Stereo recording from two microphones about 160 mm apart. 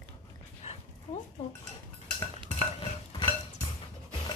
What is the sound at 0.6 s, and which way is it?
Dog, 40° left (ahead or behind).